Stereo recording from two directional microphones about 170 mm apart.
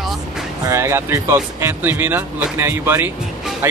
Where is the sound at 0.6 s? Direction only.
15° right (ahead or behind).